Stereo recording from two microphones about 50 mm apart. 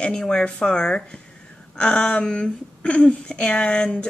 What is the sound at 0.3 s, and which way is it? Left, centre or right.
Speech, centre.